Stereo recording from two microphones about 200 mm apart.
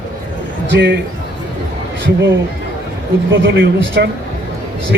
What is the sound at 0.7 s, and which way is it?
Speech, 60° right (ahead or behind).